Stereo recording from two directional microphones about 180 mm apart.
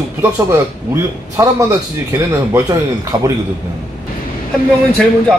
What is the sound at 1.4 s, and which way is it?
Speech, 15° right (ahead or behind).